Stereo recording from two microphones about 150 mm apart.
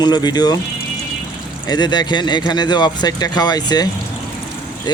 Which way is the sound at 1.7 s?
30° left (ahead or behind).